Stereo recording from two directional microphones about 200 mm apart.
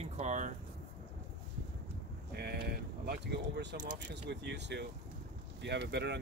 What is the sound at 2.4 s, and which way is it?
Speech, 50° right (ahead or behind).